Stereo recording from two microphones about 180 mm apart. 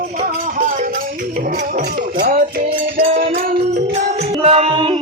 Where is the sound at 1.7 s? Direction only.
55° right (ahead or behind).